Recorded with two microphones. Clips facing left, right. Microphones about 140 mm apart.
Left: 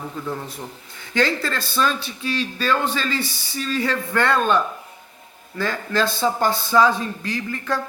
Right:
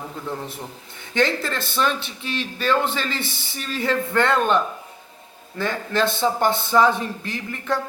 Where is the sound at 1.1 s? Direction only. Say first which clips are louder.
Even; 20° right (ahead or behind).